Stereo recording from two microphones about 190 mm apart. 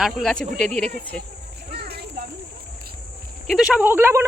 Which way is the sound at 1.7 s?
55° right (ahead or behind).